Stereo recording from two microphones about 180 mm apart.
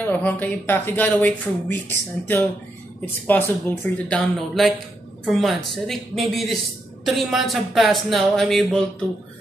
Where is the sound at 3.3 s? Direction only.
10° left (ahead or behind).